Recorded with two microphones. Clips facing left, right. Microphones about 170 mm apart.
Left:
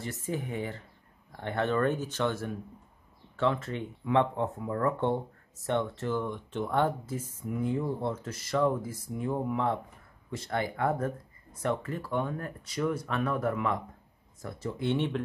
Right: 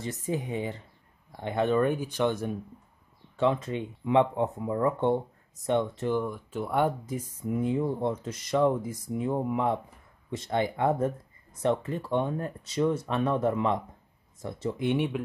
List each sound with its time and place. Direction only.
0.0 s speech: 20° right (ahead or behind)